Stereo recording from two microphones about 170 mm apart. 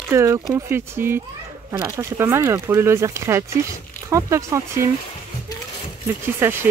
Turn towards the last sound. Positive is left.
turn(degrees=-15)  # may be behind; listen again after turning